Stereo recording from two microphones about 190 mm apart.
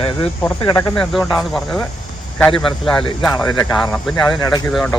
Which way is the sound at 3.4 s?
15° left (ahead or behind).